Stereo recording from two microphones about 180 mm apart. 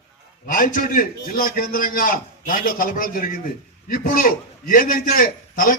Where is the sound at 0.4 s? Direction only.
50° left (ahead or behind).